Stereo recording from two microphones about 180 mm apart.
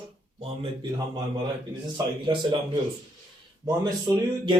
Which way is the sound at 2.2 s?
30° right (ahead or behind).